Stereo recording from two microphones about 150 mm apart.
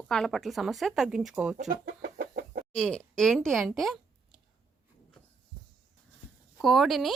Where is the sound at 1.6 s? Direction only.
70° right (ahead or behind).